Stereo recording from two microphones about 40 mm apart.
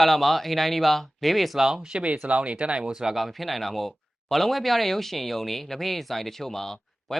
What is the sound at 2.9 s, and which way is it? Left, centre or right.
Speech, centre.